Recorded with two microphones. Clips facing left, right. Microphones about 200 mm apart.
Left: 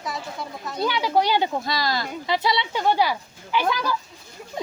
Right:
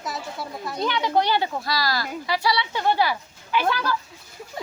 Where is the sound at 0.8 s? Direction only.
10° left (ahead or behind).